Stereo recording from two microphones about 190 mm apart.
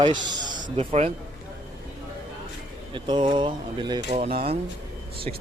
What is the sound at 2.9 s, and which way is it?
Speech, 25° right (ahead or behind).